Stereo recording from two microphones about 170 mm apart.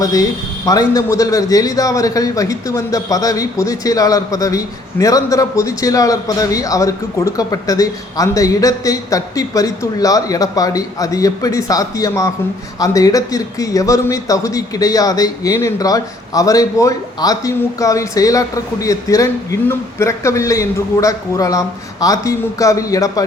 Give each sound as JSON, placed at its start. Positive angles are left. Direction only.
{"t": 0.0, "sound": "a man's voice", "side_deg": 20}